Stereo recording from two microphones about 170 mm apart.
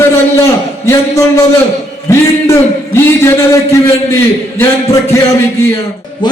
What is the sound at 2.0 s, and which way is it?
A man's voice, 15° left (ahead or behind).